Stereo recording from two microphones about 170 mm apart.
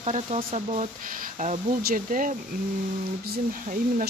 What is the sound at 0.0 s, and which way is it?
Speech, 40° right (ahead or behind).